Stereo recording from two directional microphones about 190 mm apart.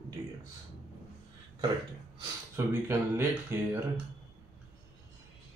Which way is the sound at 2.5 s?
15° right (ahead or behind).